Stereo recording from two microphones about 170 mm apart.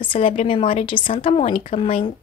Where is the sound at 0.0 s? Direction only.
30° left (ahead or behind).